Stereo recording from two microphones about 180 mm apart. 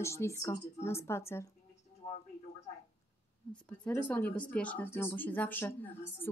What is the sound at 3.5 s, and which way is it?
Speech, 5° left (ahead or behind).